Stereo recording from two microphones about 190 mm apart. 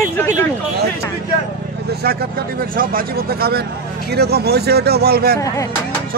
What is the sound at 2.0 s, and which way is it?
Speech, 55° right (ahead or behind).